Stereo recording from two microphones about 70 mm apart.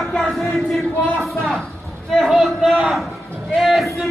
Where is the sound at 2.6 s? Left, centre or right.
Centre.